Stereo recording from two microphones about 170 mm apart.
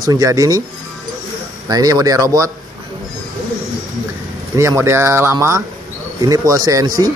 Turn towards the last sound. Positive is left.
turn(degrees=-20)  # may be behind; listen again after turning